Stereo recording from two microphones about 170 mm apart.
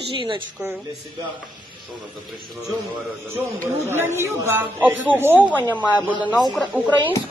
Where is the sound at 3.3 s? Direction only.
15° right (ahead or behind).